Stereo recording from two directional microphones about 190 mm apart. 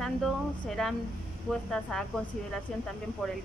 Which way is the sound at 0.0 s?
Centre (ahead or behind).